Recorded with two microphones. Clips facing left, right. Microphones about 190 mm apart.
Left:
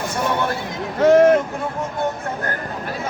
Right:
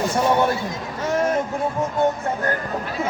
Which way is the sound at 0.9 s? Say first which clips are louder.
Left 10 dB; 60° left (ahead or behind).